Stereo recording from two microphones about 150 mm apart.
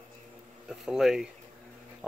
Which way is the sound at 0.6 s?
5° right (ahead or behind).